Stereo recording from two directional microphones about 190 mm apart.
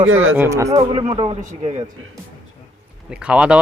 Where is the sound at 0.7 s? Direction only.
30° right (ahead or behind).